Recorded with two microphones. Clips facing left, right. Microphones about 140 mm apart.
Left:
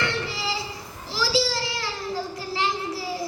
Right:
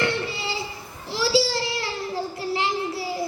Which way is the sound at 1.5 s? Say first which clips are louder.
Right 2 dB; 25° right (ahead or behind).